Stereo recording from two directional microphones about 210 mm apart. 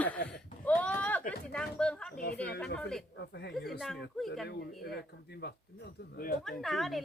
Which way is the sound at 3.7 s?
Centre (ahead or behind).